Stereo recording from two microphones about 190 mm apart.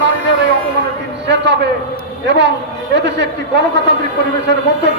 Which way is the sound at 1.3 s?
65° right (ahead or behind).